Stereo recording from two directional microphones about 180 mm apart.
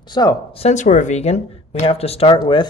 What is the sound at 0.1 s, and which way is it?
Speech, 25° left (ahead or behind).